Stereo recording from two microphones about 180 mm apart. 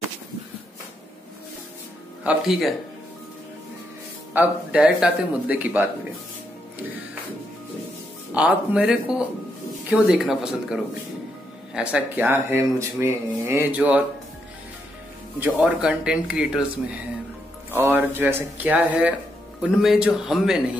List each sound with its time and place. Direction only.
2.2 s speech: centre (ahead or behind)
4.3 s speech: 10° right (ahead or behind)
8.3 s speech: 5° right (ahead or behind)
15.4 s speech: 5° right (ahead or behind)
17.6 s speech: 10° right (ahead or behind)